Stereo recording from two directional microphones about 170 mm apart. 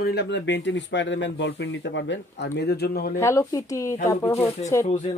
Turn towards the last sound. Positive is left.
turn(degrees=40)  # may be behind; listen again after turning